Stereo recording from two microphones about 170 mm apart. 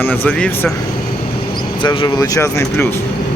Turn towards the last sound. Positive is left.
turn(degrees=15)  # may be behind; listen again after turning